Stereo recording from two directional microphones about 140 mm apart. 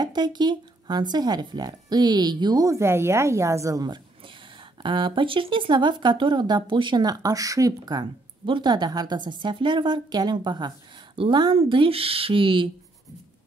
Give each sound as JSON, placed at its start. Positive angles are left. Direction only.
{"t": 0.0, "sound": "speech", "side_deg": -30}